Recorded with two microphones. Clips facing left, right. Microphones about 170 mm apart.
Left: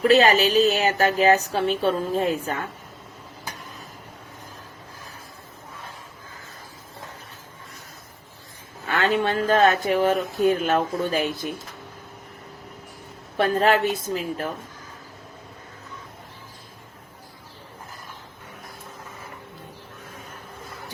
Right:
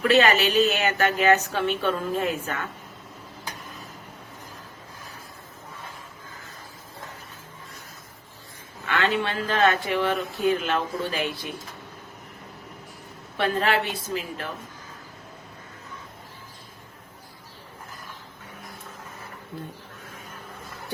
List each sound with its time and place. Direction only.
0.0 s a woman's voice: 35° left (ahead or behind)
8.9 s speech: 40° left (ahead or behind)
13.3 s speech: 40° left (ahead or behind)